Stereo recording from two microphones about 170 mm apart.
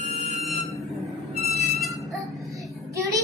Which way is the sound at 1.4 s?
Centre (ahead or behind).